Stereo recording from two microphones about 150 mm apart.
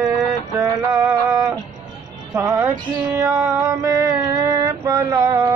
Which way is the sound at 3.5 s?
20° right (ahead or behind).